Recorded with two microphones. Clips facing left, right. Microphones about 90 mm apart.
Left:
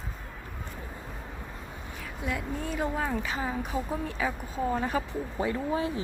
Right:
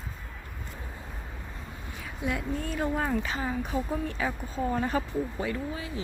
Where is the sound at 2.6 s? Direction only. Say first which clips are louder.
Even; 5° left (ahead or behind).